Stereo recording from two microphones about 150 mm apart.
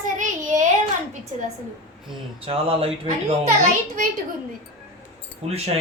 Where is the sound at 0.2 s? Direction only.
55° right (ahead or behind).